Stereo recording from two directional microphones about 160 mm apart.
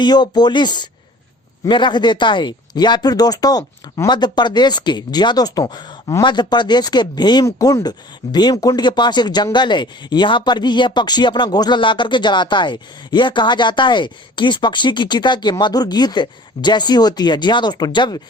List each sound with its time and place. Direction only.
0.0 s speech: 25° left (ahead or behind)